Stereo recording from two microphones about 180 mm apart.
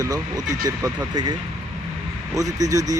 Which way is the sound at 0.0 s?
20° right (ahead or behind).